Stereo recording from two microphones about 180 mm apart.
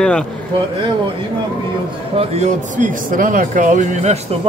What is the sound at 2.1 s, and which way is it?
Speech, 40° right (ahead or behind).